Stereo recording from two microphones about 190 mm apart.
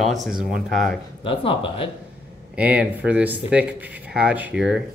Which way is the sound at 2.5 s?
5° right (ahead or behind).